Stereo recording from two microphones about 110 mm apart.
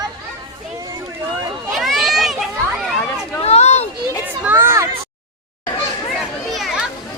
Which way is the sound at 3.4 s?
75° left (ahead or behind).